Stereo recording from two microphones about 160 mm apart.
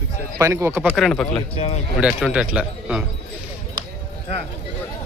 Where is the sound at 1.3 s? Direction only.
40° left (ahead or behind).